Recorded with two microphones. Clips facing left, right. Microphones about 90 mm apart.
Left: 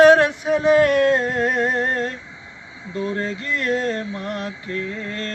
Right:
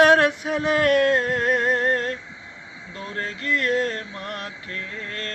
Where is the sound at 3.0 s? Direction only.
15° left (ahead or behind).